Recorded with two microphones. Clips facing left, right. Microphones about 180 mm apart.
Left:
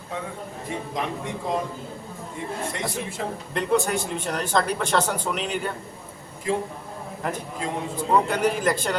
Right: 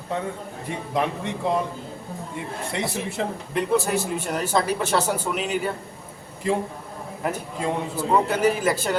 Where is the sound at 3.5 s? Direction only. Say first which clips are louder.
Right 1 dB; 5° right (ahead or behind).